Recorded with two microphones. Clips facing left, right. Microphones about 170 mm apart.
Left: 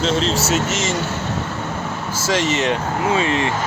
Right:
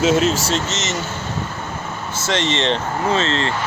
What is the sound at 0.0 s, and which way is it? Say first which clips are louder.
Speech: right 3 dB; 5° right (ahead or behind).